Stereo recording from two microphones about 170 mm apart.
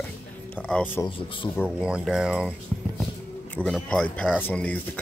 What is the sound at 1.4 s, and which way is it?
Speech, 20° left (ahead or behind).